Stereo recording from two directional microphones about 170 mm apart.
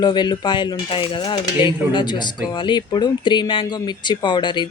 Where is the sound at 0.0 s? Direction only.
25° left (ahead or behind).